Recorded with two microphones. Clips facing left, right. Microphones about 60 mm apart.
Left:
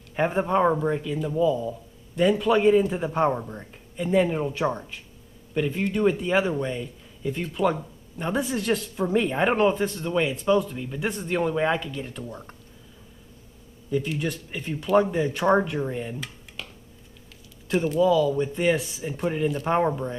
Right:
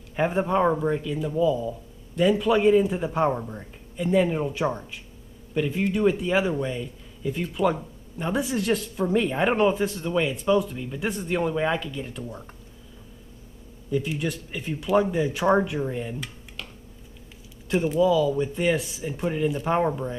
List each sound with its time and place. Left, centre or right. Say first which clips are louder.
0.1 s speech: even; centre
13.8 s speech: even; centre
17.6 s speech: even; centre